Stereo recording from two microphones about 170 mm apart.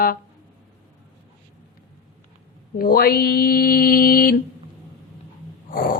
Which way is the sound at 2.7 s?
60° left (ahead or behind).